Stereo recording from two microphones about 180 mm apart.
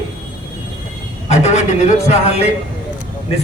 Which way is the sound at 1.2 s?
40° left (ahead or behind).